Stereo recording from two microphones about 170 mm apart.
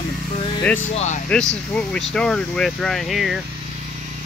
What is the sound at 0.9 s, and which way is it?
Speech, 45° left (ahead or behind).